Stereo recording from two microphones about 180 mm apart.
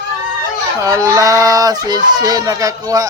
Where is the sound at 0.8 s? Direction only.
20° right (ahead or behind).